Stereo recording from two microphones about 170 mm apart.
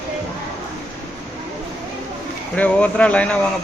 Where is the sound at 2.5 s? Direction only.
5° left (ahead or behind).